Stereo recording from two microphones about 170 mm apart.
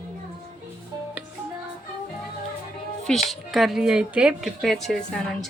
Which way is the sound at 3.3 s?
Centre (ahead or behind).